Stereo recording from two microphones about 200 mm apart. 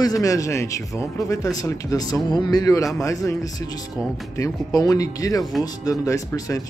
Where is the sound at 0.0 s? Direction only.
15° left (ahead or behind).